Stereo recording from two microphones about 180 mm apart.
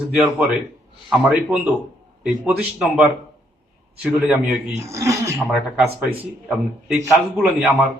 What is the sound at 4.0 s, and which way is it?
Speech, 10° right (ahead or behind).